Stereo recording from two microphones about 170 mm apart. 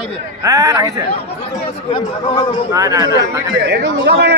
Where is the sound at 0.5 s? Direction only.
20° right (ahead or behind).